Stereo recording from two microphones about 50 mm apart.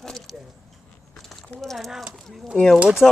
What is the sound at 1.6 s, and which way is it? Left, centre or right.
Speech, centre.